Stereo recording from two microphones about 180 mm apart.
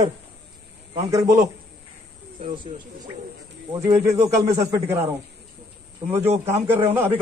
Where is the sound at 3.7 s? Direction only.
15° right (ahead or behind).